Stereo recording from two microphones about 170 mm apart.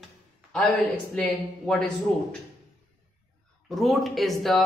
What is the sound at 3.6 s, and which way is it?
Speech, centre (ahead or behind).